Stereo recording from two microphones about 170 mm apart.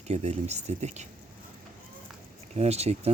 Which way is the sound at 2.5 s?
40° right (ahead or behind).